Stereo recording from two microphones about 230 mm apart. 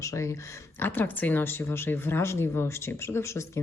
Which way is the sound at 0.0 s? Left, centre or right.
Centre.